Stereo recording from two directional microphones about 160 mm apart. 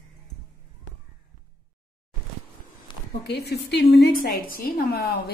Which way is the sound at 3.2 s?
90° left.